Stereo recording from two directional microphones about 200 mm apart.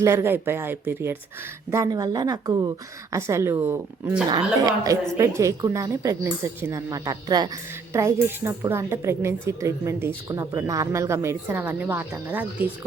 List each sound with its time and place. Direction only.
0.0 s a woman's voice: 15° right (ahead or behind)